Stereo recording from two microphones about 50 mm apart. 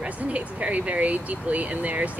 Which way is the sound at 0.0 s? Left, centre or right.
Right.